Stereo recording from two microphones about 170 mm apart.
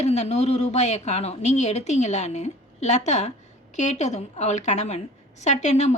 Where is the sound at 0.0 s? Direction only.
40° left (ahead or behind).